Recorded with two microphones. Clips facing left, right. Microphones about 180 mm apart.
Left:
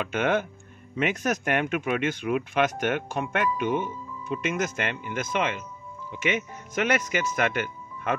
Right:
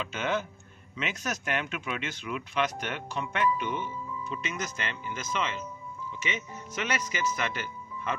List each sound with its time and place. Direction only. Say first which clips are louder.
0.0 s speech: left 6 dB; 55° left (ahead or behind)